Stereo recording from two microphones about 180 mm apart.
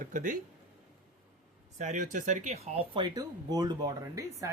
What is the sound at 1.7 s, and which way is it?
Speech, 45° right (ahead or behind).